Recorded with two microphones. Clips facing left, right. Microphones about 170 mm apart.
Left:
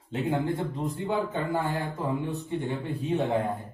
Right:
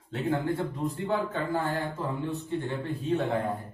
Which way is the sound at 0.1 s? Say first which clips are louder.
Left 1 dB; 15° left (ahead or behind).